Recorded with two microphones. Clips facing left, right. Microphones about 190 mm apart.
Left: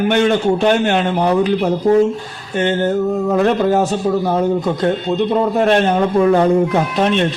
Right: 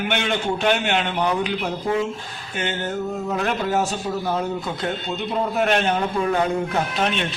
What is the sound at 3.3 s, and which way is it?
A man's voice, 40° left (ahead or behind).